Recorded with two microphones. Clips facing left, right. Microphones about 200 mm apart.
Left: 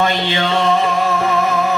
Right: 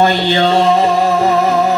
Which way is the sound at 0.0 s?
35° right (ahead or behind).